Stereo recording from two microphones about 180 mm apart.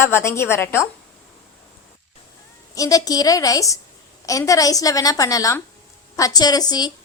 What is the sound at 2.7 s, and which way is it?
A woman's voice, 20° left (ahead or behind).